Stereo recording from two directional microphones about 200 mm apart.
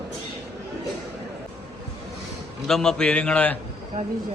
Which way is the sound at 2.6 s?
Centre (ahead or behind).